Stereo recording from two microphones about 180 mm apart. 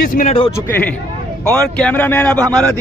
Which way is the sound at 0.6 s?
10° left (ahead or behind).